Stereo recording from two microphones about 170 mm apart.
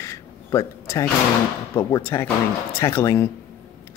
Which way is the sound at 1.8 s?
20° left (ahead or behind).